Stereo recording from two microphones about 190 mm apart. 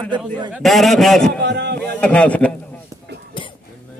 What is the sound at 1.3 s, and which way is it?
Speech, 60° right (ahead or behind).